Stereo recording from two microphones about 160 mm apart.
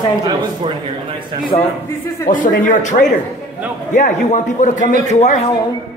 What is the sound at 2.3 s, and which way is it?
Speech, 55° left (ahead or behind).